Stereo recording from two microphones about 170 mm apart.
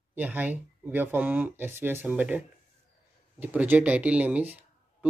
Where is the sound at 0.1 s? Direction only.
10° right (ahead or behind).